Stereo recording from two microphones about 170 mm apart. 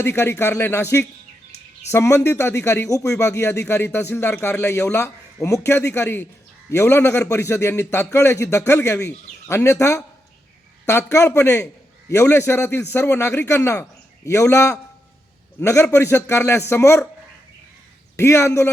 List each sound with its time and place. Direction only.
0.0 s a man's voice: 15° left (ahead or behind)
10.8 s a man's voice: 15° left (ahead or behind)
18.2 s a man's voice: 15° left (ahead or behind)